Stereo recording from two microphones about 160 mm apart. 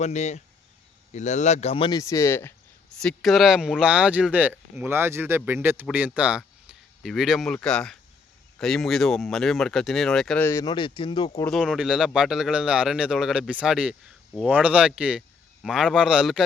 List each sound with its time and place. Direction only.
0.0 s speech: 45° left (ahead or behind); by 2.5 s 15° left (ahead or behind)
3.0 s a man's voice: 5° left (ahead or behind)
10.4 s speech: 20° left (ahead or behind)
11.5 s a man's voice: centre (ahead or behind)